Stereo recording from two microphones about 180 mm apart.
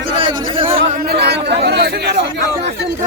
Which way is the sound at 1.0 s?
60° right (ahead or behind).